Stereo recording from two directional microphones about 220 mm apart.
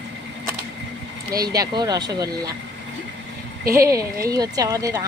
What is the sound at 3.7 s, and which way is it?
Speech, 15° right (ahead or behind).